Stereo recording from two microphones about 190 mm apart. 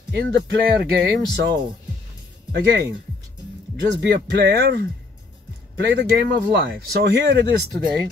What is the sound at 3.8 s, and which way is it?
Speech, 65° right (ahead or behind).